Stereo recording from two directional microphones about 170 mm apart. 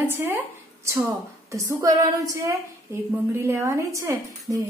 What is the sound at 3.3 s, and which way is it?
Speech, 15° right (ahead or behind).